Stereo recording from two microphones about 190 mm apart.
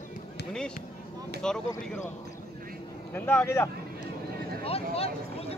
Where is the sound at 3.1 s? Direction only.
10° left (ahead or behind).